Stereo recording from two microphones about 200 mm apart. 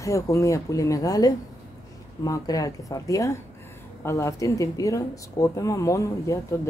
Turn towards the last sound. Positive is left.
turn(degrees=15)  # may be behind; listen again after turning